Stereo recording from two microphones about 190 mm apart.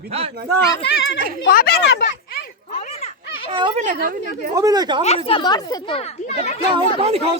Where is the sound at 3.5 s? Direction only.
25° right (ahead or behind).